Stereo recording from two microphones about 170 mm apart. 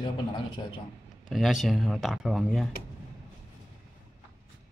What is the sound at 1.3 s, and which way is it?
Speech, centre (ahead or behind).